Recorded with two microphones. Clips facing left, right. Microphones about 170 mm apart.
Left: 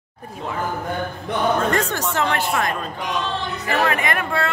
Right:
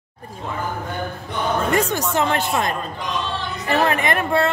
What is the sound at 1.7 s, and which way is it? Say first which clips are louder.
Speech: right 2 dB; 10° right (ahead or behind).